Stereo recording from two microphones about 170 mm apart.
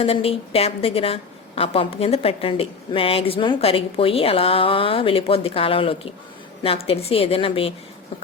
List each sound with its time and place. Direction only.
0.0 s a woman's voice: 35° left (ahead or behind)